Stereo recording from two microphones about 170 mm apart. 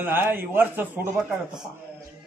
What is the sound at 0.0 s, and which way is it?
A man's voice, 10° right (ahead or behind).